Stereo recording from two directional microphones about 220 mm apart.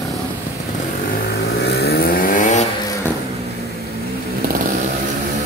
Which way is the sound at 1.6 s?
45° left (ahead or behind).